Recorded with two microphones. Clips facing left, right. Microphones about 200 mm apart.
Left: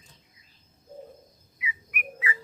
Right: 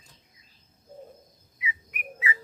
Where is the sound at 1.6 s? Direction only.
25° right (ahead or behind).